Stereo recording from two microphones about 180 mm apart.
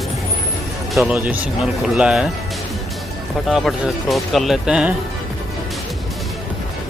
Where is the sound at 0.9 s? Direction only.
5° right (ahead or behind).